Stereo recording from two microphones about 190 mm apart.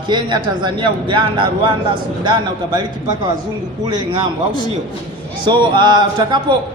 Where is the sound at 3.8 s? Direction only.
20° right (ahead or behind).